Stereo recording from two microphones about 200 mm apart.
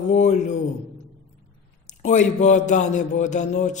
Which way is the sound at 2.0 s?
35° left (ahead or behind).